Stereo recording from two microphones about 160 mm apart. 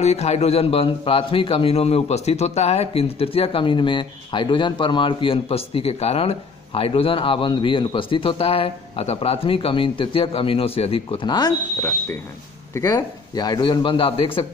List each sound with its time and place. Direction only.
0.0 s a man's voice: 40° left (ahead or behind); by 11.5 s 25° left (ahead or behind)
12.8 s a man's voice: 25° left (ahead or behind)